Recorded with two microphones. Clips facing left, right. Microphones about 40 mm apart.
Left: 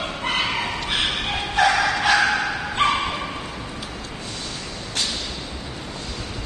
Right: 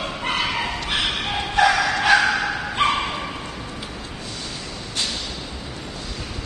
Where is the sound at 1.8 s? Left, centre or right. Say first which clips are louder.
Even; centre.